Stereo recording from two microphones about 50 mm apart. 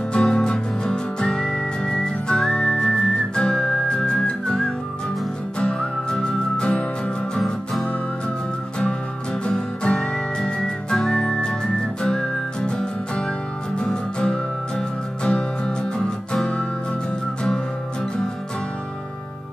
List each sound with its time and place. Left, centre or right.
0.1 s music: centre
9.4 s music: centre
10.4 s whistling: centre
13.7 s music: left